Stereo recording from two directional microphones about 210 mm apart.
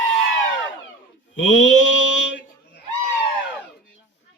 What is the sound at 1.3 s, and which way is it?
Mantra, 65° left (ahead or behind).